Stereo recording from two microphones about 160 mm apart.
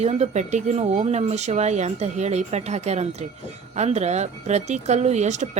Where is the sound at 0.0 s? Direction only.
45° right (ahead or behind).